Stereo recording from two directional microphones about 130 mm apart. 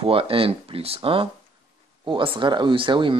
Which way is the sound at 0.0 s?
45° right (ahead or behind).